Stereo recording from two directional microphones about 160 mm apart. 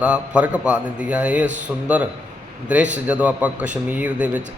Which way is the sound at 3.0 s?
10° right (ahead or behind).